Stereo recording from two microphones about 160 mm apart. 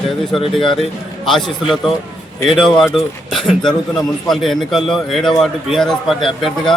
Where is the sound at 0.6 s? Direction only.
30° left (ahead or behind).